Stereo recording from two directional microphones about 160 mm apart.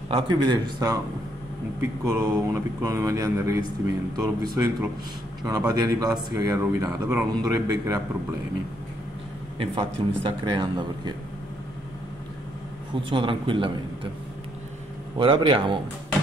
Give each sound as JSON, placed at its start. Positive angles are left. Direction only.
{"t": 0.1, "sound": "speech", "side_deg": -30}
{"t": 5.7, "sound": "speech", "side_deg": -20}
{"t": 9.6, "sound": "a man's voice", "side_deg": -35}
{"t": 12.9, "sound": "a man's voice", "side_deg": -35}
{"t": 15.1, "sound": "a man's voice", "side_deg": -35}